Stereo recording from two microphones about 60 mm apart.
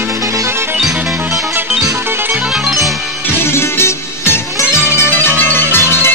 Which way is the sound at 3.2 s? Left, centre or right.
Left.